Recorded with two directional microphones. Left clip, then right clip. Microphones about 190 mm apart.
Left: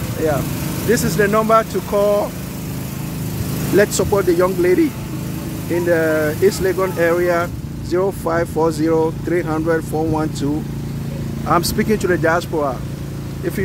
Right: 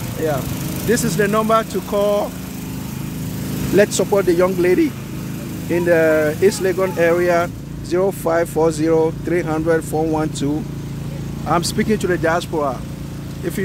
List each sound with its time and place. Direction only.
0.8 s speech: 10° right (ahead or behind)
3.7 s speech: 10° right (ahead or behind)